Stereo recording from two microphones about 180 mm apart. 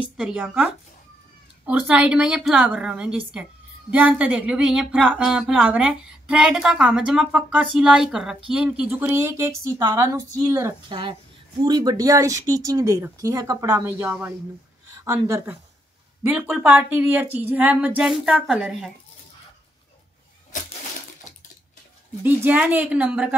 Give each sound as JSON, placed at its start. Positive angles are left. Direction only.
{"t": 0.2, "sound": "speech", "side_deg": -5}
{"t": 1.7, "sound": "speech", "side_deg": -5}
{"t": 22.2, "sound": "speech", "side_deg": -10}